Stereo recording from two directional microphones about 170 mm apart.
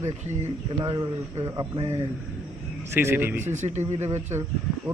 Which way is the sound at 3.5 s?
45° right (ahead or behind).